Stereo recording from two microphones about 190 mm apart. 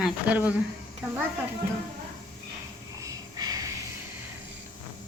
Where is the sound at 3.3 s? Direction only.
20° right (ahead or behind).